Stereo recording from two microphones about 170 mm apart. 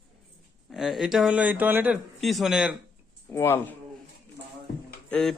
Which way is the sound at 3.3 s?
15° left (ahead or behind).